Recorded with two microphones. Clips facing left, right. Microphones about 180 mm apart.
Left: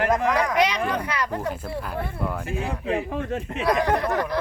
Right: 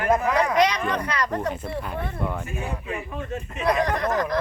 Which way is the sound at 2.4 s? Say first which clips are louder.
Left 4 dB; 90° left.